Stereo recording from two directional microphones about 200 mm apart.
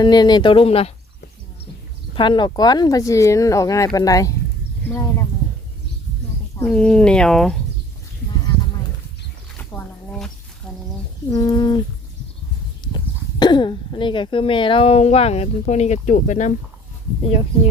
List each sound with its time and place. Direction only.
0.0 s speech: 20° left (ahead or behind)
2.1 s speech: 25° left (ahead or behind)
6.7 s speech: 5° left (ahead or behind)
9.6 s a sound: 5° left (ahead or behind)
11.3 s speech: 20° left (ahead or behind)
13.4 s speech: 20° left (ahead or behind); by 16.6 s 40° left (ahead or behind)